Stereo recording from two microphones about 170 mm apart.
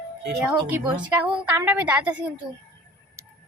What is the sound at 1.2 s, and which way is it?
Speech, 10° right (ahead or behind).